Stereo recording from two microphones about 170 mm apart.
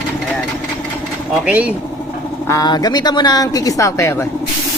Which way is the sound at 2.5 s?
20° left (ahead or behind).